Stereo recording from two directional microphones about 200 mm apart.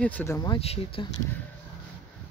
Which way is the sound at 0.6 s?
30° left (ahead or behind).